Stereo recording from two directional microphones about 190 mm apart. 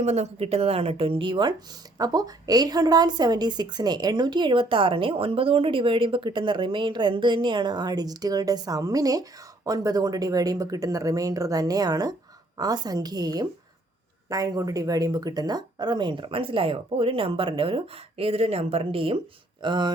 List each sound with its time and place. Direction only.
0.0 s a woman's voice: 35° right (ahead or behind)